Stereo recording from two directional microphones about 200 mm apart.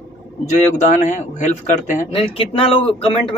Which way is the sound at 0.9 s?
35° left (ahead or behind).